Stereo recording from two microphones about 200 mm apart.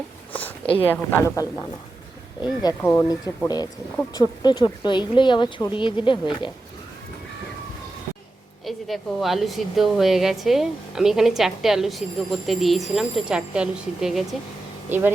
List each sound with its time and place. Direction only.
0.9 s a woman's voice: 10° left (ahead or behind)
8.6 s speech: centre (ahead or behind)